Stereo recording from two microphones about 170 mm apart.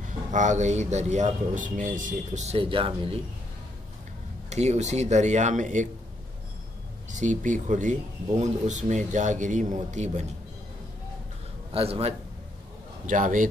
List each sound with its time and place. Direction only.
0.3 s speech: 45° right (ahead or behind)
4.5 s speech: 40° right (ahead or behind)
7.1 s speech: 45° right (ahead or behind)
11.7 s a man's voice: 35° right (ahead or behind)
13.0 s speech: 50° right (ahead or behind)